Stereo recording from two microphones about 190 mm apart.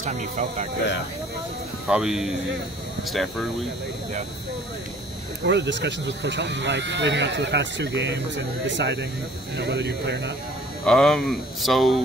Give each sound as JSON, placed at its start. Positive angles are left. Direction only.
{"t": 0.0, "sound": "speech", "side_deg": -40}
{"t": 1.9, "sound": "speech", "side_deg": -5}
{"t": 5.4, "sound": "speech", "side_deg": -65}
{"t": 10.9, "sound": "speech", "side_deg": 5}